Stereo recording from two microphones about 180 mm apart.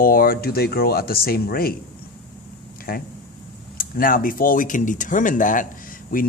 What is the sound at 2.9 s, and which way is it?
Speech, 55° left (ahead or behind).